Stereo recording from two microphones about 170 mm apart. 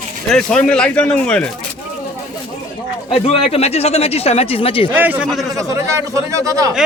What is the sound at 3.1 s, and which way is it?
Speech, 35° left (ahead or behind).